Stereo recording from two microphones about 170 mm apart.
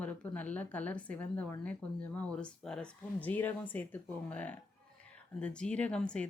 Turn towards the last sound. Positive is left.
turn(degrees=5)  # may be behind; listen again after turning